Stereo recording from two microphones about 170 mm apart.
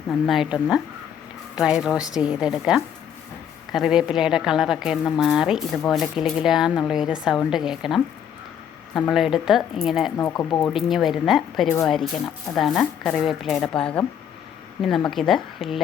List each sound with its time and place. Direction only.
0.3 s a woman's voice: 5° right (ahead or behind)
9.0 s a woman's voice: centre (ahead or behind)
10.2 s speech: 20° left (ahead or behind)
10.7 s a woman's voice: centre (ahead or behind)